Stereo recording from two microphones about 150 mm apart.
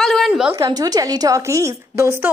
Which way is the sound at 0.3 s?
10° right (ahead or behind).